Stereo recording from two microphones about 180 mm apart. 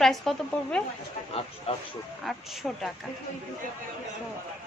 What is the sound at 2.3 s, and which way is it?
Speech, centre (ahead or behind).